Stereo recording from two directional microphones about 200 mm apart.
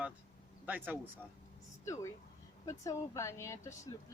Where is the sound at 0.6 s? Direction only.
10° right (ahead or behind).